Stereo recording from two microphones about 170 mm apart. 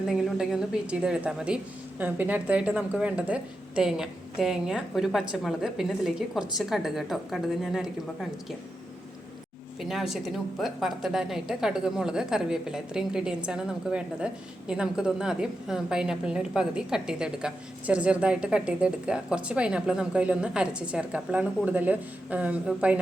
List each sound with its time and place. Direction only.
0.1 s a woman's voice: 5° right (ahead or behind)
9.9 s a woman's voice: centre (ahead or behind)